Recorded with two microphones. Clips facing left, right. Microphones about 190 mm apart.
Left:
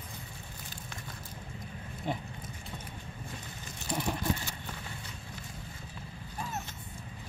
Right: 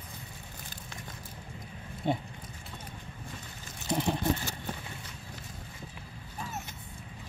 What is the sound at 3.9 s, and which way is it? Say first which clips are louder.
Vehicle: right 4 dB; 20° right (ahead or behind).